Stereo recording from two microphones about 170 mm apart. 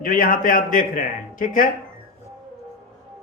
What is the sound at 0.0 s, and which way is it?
A man's voice, 50° left (ahead or behind).